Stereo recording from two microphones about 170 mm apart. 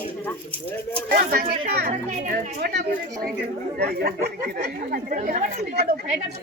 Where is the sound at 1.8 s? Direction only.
45° right (ahead or behind).